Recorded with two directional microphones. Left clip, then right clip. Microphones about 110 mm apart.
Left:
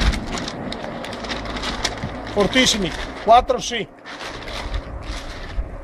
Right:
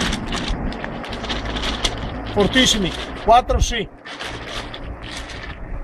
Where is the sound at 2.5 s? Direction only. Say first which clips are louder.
Right 2 dB; 45° left (ahead or behind).